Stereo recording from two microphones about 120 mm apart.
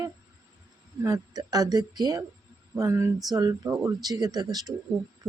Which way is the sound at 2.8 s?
25° right (ahead or behind).